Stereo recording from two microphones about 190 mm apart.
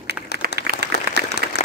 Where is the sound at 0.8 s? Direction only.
60° right (ahead or behind).